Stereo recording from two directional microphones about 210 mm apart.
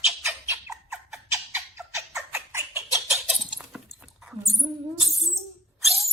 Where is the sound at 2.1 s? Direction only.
10° right (ahead or behind).